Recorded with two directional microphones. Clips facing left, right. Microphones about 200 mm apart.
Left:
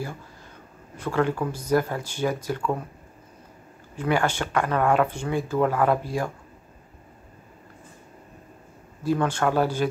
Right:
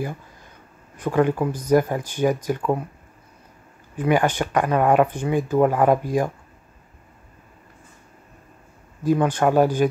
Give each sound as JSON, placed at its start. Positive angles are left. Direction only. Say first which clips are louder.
{"t": 1.0, "sound": "speech", "louder": "right 4 dB", "side_deg": -15}
{"t": 3.9, "sound": "speech", "louder": "right 4 dB", "side_deg": -15}
{"t": 9.0, "sound": "speech", "louder": "right 4 dB", "side_deg": -15}